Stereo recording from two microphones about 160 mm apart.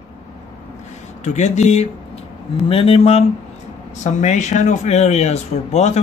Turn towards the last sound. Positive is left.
turn(degrees=40)  # may be behind; listen again after turning